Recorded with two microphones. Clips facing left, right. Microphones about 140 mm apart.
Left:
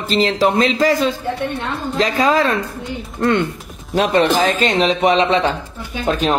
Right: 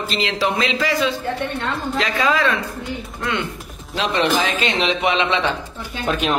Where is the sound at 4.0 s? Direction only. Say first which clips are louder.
Left 5 dB; 45° left (ahead or behind).